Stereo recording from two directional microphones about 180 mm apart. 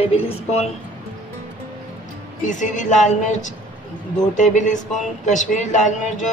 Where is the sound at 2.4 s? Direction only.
45° left (ahead or behind).